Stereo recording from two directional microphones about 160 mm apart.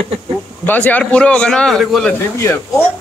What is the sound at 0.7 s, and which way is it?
A man's voice, 10° left (ahead or behind).